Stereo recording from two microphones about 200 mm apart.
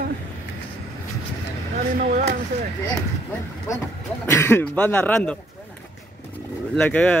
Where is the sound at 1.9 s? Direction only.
45° right (ahead or behind).